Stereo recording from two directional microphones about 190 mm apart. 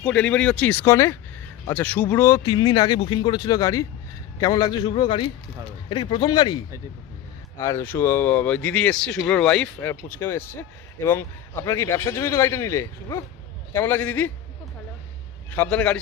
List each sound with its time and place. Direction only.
0.0 s speech: 5° left (ahead or behind)
2.6 s speech: 20° left (ahead or behind)
15.4 s speech: 10° left (ahead or behind)